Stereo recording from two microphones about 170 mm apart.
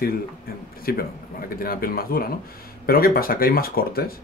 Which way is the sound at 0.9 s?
60° left (ahead or behind).